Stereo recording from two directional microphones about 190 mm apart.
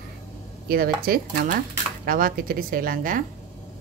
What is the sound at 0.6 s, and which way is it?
Speech, 50° right (ahead or behind).